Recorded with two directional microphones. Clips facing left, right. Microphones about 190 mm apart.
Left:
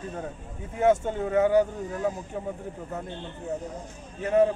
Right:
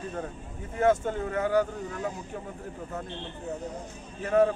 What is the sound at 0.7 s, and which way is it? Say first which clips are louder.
Speech: left 2 dB; 20° left (ahead or behind).